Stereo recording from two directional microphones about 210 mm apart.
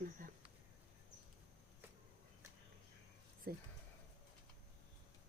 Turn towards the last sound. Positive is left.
turn(degrees=-45)  # may be behind; listen again after turning